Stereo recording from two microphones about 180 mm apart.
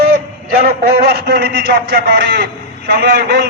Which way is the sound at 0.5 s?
60° right (ahead or behind).